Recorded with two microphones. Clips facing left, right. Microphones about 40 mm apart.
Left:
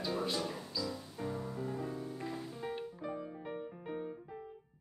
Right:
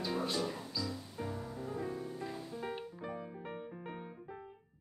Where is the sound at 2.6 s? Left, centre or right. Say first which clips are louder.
Left 2 dB; centre.